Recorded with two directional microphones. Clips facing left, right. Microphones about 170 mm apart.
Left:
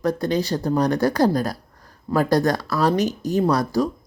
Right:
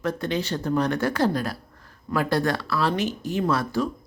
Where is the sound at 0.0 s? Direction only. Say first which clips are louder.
Left 5 dB; 40° left (ahead or behind).